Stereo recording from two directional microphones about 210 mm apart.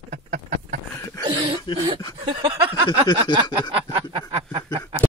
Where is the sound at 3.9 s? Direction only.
25° right (ahead or behind).